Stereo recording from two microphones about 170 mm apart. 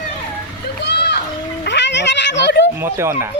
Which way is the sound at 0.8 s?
75° left (ahead or behind).